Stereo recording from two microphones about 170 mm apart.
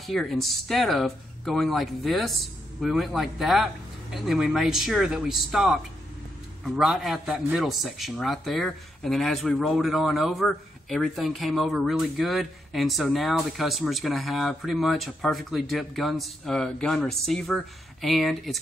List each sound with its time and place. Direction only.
0.0 s a man's voice: centre (ahead or behind)